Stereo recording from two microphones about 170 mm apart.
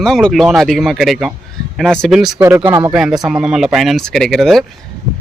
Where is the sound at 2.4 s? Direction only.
15° right (ahead or behind).